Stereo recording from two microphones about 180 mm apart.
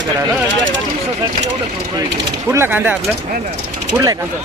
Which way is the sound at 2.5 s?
10° right (ahead or behind).